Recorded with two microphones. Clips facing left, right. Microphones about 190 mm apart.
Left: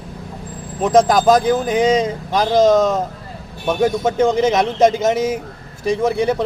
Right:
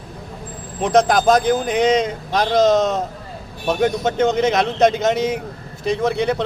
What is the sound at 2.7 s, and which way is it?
Speech, 25° right (ahead or behind).